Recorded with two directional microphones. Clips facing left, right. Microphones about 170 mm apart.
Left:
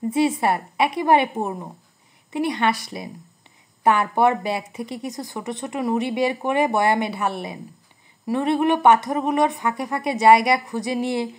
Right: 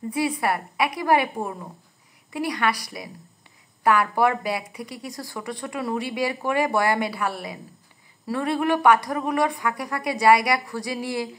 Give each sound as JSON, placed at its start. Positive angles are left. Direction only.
{"t": 0.1, "sound": "speech", "side_deg": 25}